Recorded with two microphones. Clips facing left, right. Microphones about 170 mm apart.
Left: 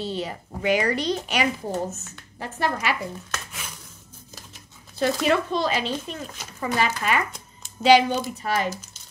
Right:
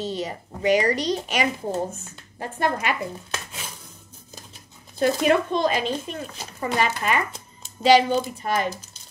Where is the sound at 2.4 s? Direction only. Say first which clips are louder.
Right 2 dB; 50° right (ahead or behind).